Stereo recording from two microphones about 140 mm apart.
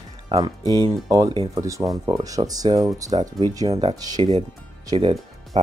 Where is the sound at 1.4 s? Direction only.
25° right (ahead or behind).